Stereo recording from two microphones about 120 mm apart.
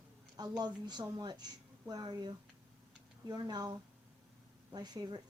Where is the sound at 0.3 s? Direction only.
35° right (ahead or behind).